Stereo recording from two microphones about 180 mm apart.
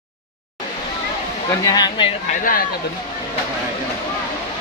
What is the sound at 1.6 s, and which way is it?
Speech, 20° left (ahead or behind).